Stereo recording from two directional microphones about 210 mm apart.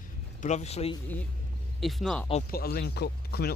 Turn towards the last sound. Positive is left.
turn(degrees=50)  # may be behind; listen again after turning